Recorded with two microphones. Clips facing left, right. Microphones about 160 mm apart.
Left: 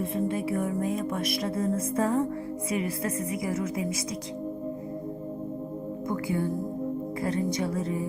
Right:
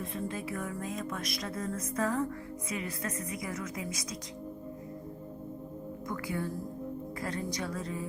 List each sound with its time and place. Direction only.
0.0 s music: 30° left (ahead or behind)
6.1 s music: 25° left (ahead or behind)